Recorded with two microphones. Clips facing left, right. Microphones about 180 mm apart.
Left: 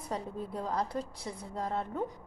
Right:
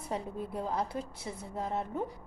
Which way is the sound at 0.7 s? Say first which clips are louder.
Left 1 dB; 5° right (ahead or behind).